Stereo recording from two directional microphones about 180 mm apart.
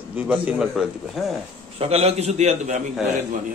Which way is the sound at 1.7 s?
35° right (ahead or behind).